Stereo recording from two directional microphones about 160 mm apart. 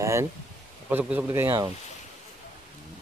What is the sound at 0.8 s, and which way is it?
Speech, 10° right (ahead or behind).